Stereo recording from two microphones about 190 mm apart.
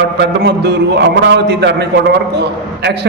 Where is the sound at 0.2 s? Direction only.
60° right (ahead or behind).